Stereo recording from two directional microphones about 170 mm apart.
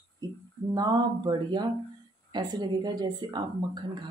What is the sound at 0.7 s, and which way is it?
A woman's voice, 25° right (ahead or behind).